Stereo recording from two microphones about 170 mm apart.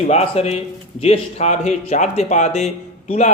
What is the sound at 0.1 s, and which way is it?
A man's voice, 40° left (ahead or behind).